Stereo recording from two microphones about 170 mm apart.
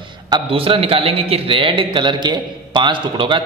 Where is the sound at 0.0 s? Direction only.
30° right (ahead or behind).